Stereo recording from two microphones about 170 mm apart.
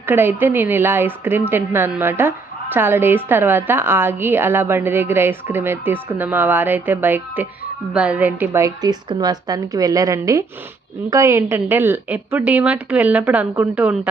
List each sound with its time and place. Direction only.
0.0 s a woman's voice: 10° right (ahead or behind)